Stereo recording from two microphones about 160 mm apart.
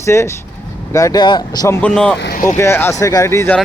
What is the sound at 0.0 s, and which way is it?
Speech, 15° left (ahead or behind).